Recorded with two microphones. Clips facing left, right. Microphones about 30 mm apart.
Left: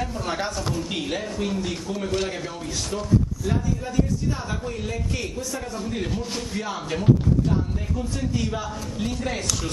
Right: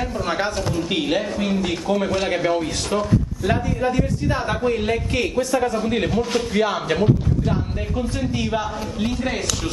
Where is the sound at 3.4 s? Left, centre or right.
Right.